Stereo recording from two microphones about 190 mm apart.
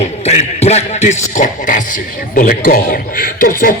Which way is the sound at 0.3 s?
35° left (ahead or behind).